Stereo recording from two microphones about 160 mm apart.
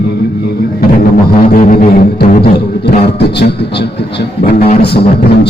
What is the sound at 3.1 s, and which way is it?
Music, 90° left.